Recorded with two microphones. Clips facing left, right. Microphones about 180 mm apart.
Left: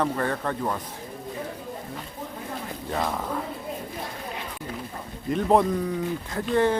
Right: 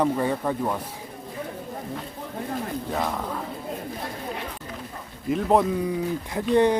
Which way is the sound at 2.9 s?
Centre (ahead or behind).